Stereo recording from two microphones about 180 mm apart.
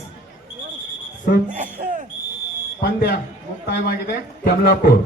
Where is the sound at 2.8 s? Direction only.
65° left (ahead or behind).